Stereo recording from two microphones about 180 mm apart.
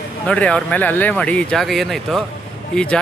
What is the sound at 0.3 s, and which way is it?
Speech, 5° left (ahead or behind).